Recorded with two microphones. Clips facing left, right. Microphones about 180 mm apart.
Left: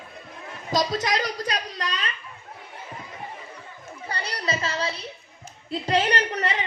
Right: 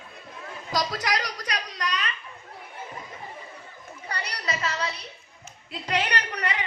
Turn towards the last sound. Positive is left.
turn(degrees=25)  # may be behind; listen again after turning